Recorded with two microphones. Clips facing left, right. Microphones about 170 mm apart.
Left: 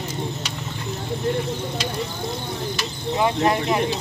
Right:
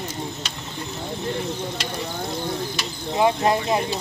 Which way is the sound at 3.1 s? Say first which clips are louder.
Right 1 dB; 25° right (ahead or behind).